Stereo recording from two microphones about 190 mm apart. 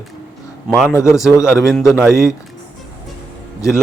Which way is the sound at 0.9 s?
15° left (ahead or behind).